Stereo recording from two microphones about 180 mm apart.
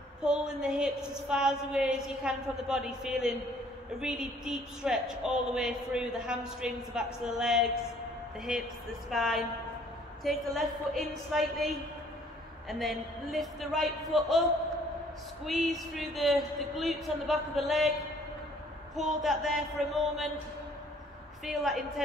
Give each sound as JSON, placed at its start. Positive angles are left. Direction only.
{"t": 0.2, "sound": "a woman's voice", "side_deg": -5}
{"t": 15.4, "sound": "a woman's voice", "side_deg": 0}
{"t": 18.9, "sound": "a woman's voice", "side_deg": 0}
{"t": 21.5, "sound": "a woman's voice", "side_deg": 0}